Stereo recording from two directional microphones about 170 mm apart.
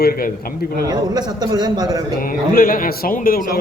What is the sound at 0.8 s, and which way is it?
A man's voice, 25° right (ahead or behind).